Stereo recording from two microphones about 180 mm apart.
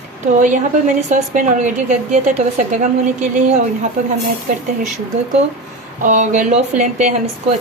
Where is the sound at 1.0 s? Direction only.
40° right (ahead or behind).